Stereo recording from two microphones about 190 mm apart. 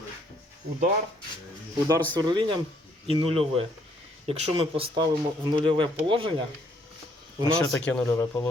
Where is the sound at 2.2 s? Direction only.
25° right (ahead or behind).